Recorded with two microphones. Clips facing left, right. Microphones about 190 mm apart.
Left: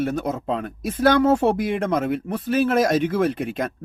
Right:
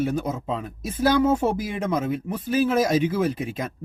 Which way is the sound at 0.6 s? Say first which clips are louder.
Left 4 dB; 65° left (ahead or behind).